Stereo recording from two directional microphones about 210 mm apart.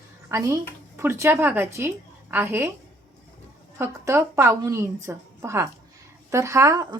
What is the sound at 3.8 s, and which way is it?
A woman's voice, 15° right (ahead or behind).